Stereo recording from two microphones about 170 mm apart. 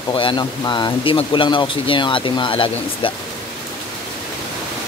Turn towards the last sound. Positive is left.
turn(degrees=30)  # may be behind; listen again after turning